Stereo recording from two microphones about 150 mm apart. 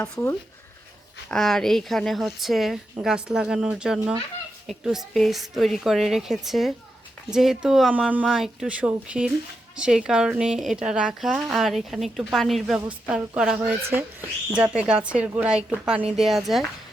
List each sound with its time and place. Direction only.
0.0 s speech: 15° left (ahead or behind)
1.3 s a woman's voice: 5° left (ahead or behind)